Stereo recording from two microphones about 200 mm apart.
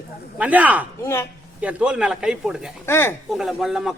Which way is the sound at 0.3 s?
5° right (ahead or behind).